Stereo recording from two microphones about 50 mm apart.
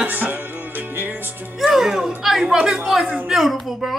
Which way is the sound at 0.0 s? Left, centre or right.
Right.